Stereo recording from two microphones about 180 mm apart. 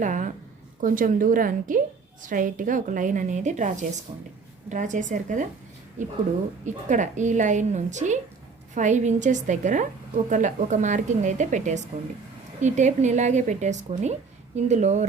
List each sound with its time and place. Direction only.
0.0 s a sound: 45° right (ahead or behind)
0.8 s speech: 45° right (ahead or behind)
6.7 s speech: 45° right (ahead or behind)